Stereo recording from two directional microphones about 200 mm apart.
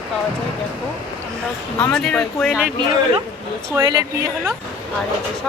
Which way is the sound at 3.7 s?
15° right (ahead or behind).